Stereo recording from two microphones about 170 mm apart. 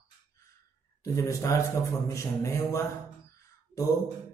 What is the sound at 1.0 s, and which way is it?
A man's voice, 20° left (ahead or behind).